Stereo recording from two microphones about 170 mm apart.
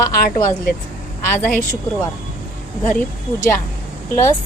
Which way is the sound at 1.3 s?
10° left (ahead or behind).